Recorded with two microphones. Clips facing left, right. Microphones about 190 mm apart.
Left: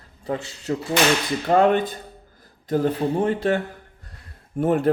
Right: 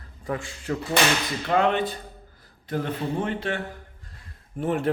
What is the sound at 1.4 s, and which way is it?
Whip, 40° left (ahead or behind).